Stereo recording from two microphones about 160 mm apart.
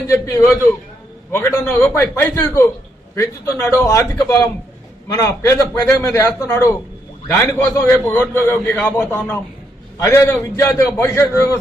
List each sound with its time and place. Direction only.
0.1 s a man's voice: 20° left (ahead or behind)